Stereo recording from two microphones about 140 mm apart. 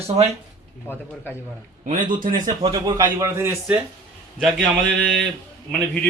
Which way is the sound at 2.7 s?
25° right (ahead or behind).